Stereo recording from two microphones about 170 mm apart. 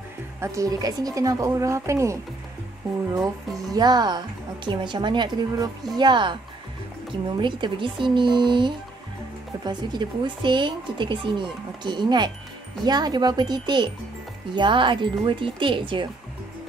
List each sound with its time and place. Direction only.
0.4 s speech: 20° right (ahead or behind)
3.5 s speech: 25° right (ahead or behind)
7.3 s speech: 25° right (ahead or behind)